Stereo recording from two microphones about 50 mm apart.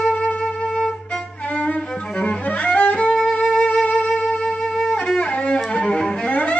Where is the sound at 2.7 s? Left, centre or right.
Left.